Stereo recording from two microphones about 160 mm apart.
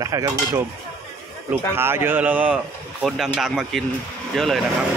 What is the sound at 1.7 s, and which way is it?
Speech, 15° right (ahead or behind).